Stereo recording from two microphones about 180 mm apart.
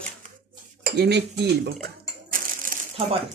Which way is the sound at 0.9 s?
65° right (ahead or behind).